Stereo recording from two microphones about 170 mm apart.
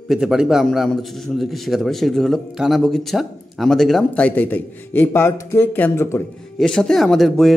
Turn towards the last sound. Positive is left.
turn(degrees=0)  # may be behind; listen again after turning